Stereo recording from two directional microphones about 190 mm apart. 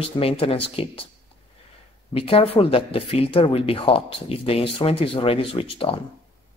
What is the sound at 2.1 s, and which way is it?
Speech, 30° left (ahead or behind).